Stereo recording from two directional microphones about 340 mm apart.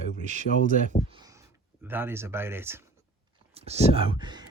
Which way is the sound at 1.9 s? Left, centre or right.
Centre.